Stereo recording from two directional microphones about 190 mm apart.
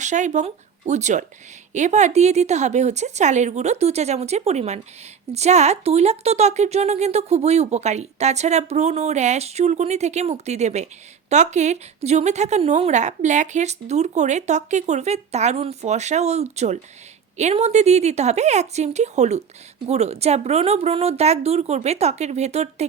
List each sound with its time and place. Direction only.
0.0 s speech: 40° right (ahead or behind)